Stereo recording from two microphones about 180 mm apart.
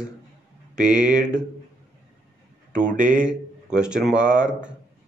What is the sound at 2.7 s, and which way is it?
Speech, 45° right (ahead or behind).